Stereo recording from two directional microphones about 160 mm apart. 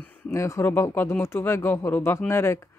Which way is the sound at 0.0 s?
20° left (ahead or behind).